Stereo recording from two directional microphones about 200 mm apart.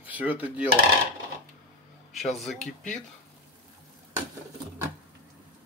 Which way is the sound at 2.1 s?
Centre (ahead or behind).